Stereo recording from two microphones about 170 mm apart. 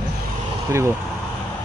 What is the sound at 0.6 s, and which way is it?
Speech, 15° right (ahead or behind).